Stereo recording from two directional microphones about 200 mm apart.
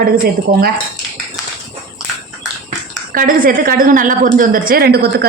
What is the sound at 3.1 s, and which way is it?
A woman's voice, 45° right (ahead or behind).